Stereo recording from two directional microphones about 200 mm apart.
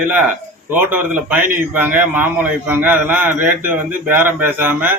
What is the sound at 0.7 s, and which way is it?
A man's voice, 10° right (ahead or behind).